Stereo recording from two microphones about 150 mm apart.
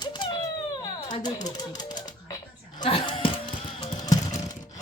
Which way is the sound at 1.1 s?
30° left (ahead or behind).